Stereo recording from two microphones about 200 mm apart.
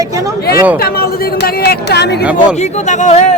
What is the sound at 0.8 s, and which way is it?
Speech, 50° left (ahead or behind).